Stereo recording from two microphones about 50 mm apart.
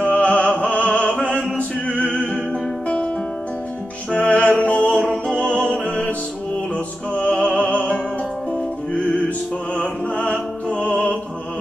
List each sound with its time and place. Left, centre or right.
0.0 s music: left
1.2 s chant: left
2.0 s music: centre
4.1 s music: left